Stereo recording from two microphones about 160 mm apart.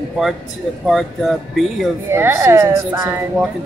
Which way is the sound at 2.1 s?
15° right (ahead or behind).